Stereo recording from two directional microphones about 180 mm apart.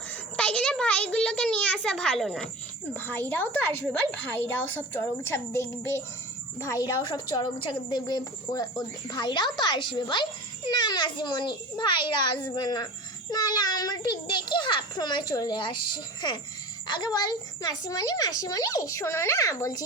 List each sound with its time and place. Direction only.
0.1 s a child's voice: 5° left (ahead or behind)
7.0 s speech: 25° left (ahead or behind)